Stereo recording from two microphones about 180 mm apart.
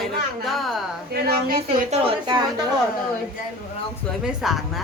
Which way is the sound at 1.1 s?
60° right (ahead or behind).